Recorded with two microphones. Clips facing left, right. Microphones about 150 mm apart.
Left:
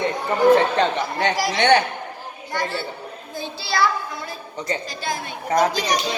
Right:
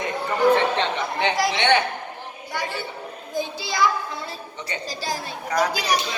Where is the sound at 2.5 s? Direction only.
10° right (ahead or behind).